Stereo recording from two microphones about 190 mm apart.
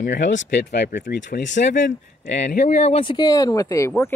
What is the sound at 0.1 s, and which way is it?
Speech, 75° left (ahead or behind).